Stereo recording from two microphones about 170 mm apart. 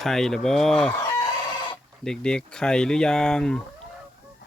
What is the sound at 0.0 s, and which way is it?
Speech, centre (ahead or behind).